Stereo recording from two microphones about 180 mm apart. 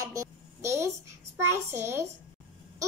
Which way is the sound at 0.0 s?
20° right (ahead or behind).